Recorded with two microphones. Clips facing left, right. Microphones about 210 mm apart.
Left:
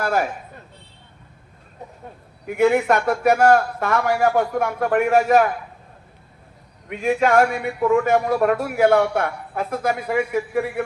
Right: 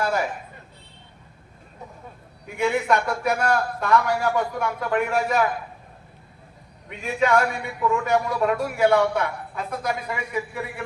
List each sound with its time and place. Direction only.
2.6 s a man's voice: 55° left (ahead or behind)
7.0 s a man's voice: 50° left (ahead or behind)